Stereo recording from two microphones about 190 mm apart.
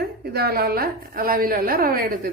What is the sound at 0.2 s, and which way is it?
A woman's voice, 55° right (ahead or behind).